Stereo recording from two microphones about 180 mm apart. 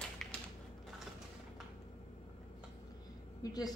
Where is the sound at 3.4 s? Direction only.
20° left (ahead or behind).